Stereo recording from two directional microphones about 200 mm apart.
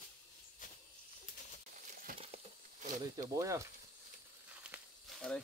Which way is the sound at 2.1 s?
45° right (ahead or behind).